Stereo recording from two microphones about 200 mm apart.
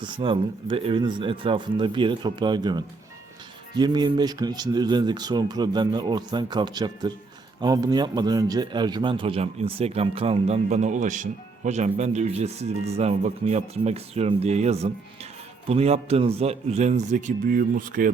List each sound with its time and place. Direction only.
0.0 s a man's voice: 25° right (ahead or behind); by 18.1 s 45° right (ahead or behind)